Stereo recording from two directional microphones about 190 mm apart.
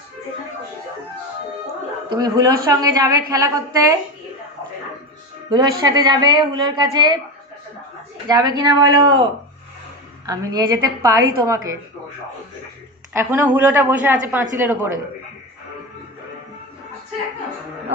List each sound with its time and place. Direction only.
2.0 s a woman's voice: 20° right (ahead or behind)
5.5 s a woman's voice: 20° right (ahead or behind)
8.3 s a woman's voice: 20° right (ahead or behind)
10.2 s speech: 20° right (ahead or behind)
13.1 s speech: 10° right (ahead or behind)